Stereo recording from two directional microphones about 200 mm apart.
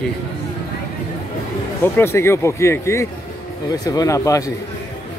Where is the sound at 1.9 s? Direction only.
10° left (ahead or behind).